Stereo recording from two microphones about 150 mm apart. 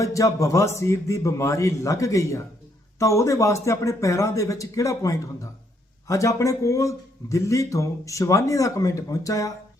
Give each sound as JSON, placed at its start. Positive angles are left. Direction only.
{"t": 0.0, "sound": "speech", "side_deg": 20}